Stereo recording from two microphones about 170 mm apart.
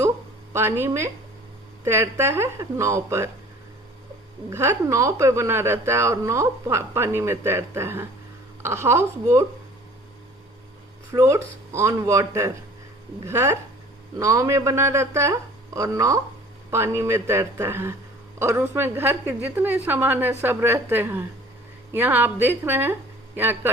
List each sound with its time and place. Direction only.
0.5 s a woman's voice: 15° right (ahead or behind)
4.4 s a woman's voice: 15° right (ahead or behind)
11.1 s a woman's voice: 20° right (ahead or behind)